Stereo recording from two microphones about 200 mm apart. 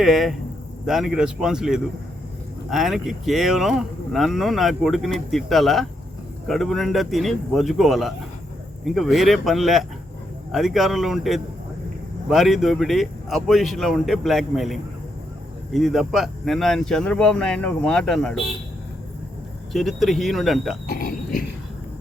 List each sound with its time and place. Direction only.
0.0 s speech: centre (ahead or behind)
19.7 s speech: centre (ahead or behind)
20.8 s cricket: 45° left (ahead or behind)